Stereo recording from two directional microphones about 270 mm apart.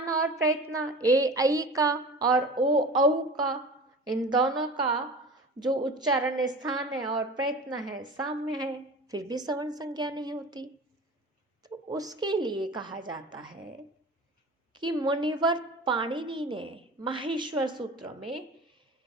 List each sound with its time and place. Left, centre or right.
0.0 s a woman's voice: centre
14.8 s a woman's voice: centre